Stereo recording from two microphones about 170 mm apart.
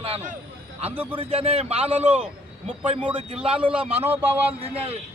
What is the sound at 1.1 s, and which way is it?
A man's voice, 35° right (ahead or behind).